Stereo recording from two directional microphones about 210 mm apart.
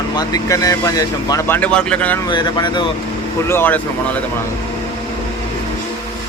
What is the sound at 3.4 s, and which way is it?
Speech, 10° left (ahead or behind).